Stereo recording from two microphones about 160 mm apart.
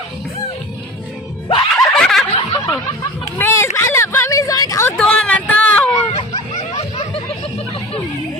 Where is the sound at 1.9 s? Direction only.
Centre (ahead or behind).